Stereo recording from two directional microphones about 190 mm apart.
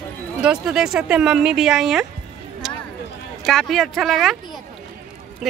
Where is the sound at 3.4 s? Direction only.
Centre (ahead or behind).